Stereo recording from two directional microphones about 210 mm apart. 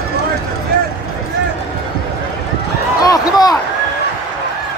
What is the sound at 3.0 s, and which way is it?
Basketball bounce, 20° left (ahead or behind).